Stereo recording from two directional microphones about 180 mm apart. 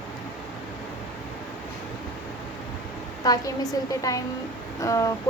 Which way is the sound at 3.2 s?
20° left (ahead or behind).